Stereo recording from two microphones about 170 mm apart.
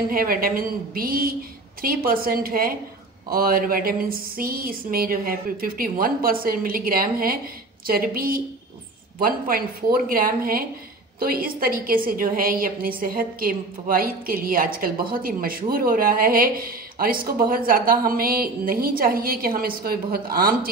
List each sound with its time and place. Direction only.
0.1 s speech: 60° right (ahead or behind)